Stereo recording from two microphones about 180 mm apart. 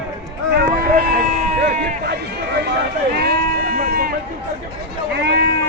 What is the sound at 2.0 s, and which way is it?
Speech, 65° right (ahead or behind).